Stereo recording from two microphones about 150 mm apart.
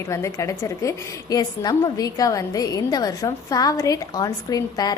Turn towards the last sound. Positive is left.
turn(degrees=25)  # may be behind; listen again after turning